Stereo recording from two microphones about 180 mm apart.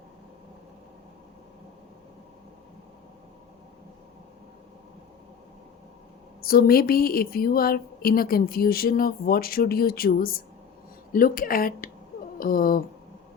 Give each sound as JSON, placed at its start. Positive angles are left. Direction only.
{"t": 6.4, "sound": "speech", "side_deg": 55}